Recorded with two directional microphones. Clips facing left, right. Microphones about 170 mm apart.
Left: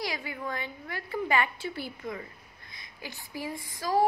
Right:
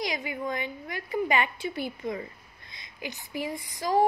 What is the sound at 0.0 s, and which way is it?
Speech, 20° right (ahead or behind).